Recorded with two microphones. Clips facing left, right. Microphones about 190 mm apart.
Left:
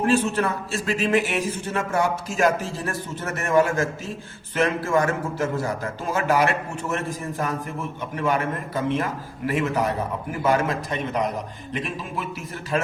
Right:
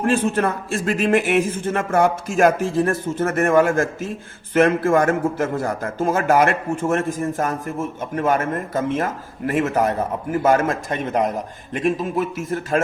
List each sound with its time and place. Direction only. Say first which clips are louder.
0.1 s a man's voice: right 4 dB; 50° right (ahead or behind)